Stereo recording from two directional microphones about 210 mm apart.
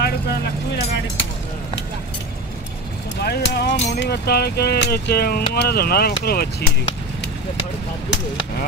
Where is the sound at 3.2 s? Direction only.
50° left (ahead or behind).